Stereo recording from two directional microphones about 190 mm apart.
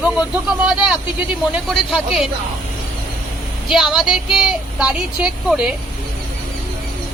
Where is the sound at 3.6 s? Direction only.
Centre (ahead or behind).